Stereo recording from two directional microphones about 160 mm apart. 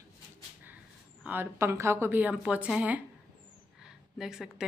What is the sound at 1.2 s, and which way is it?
A woman's voice, 10° right (ahead or behind).